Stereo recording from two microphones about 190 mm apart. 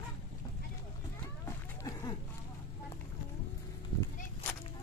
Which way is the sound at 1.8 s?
20° left (ahead or behind).